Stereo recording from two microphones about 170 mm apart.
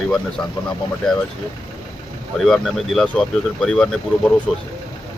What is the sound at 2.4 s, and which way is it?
Speech, centre (ahead or behind).